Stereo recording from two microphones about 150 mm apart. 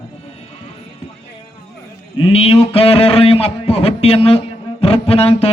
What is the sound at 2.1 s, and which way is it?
Speech, 40° left (ahead or behind).